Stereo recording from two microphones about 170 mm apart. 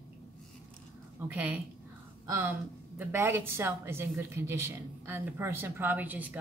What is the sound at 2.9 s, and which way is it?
Speech, 15° right (ahead or behind).